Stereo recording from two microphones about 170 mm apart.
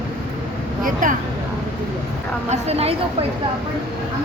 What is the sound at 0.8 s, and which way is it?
Speech, 50° right (ahead or behind).